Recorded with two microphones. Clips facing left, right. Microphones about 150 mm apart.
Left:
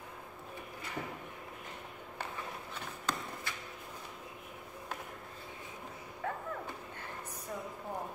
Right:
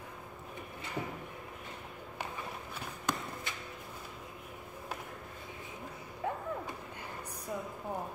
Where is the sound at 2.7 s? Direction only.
15° right (ahead or behind).